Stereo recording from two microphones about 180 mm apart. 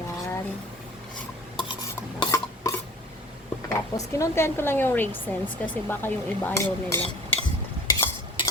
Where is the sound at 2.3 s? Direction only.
15° left (ahead or behind).